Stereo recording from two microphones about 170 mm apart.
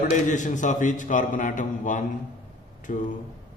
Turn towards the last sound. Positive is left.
turn(degrees=50)  # may be behind; listen again after turning